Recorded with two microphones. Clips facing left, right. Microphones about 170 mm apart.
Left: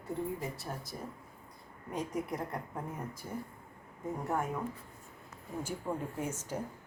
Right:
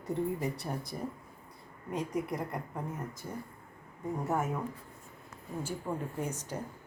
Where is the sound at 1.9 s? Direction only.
Centre (ahead or behind).